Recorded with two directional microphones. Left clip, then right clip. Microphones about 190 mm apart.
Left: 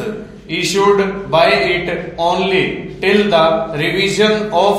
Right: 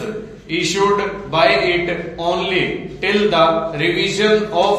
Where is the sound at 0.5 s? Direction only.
40° left (ahead or behind).